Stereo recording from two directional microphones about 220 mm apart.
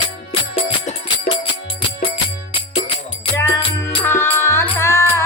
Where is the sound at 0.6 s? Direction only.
25° left (ahead or behind).